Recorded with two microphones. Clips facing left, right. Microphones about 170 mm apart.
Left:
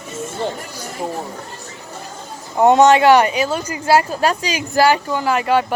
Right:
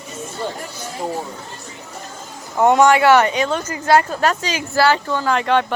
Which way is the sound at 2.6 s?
20° left (ahead or behind).